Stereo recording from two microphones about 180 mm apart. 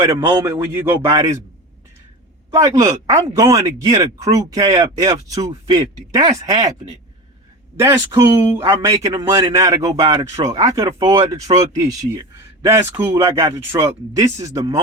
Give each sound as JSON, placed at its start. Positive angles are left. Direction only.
{"t": 0.1, "sound": "a man's voice", "side_deg": -20}
{"t": 2.5, "sound": "speech", "side_deg": -20}
{"t": 7.8, "sound": "a man's voice", "side_deg": -15}